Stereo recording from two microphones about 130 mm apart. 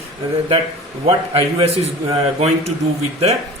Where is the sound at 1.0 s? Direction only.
45° right (ahead or behind).